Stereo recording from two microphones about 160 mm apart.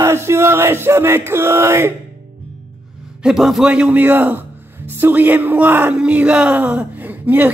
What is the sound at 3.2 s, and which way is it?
Speech, centre (ahead or behind).